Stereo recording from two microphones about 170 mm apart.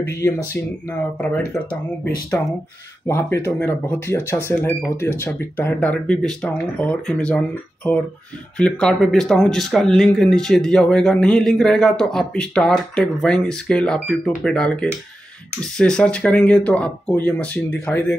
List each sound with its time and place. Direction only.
0.0 s speech: 20° left (ahead or behind)
0.8 s speech: 10° left (ahead or behind)